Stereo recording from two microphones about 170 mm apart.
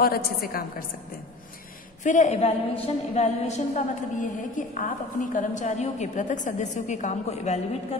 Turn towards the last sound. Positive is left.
turn(degrees=45)  # may be behind; listen again after turning